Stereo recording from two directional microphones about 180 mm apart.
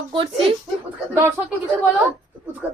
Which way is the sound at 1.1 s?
15° right (ahead or behind).